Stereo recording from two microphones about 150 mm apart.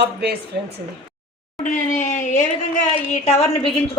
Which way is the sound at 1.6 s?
60° left (ahead or behind).